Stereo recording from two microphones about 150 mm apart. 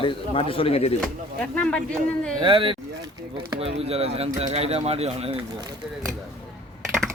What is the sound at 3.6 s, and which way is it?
Speech, 40° right (ahead or behind).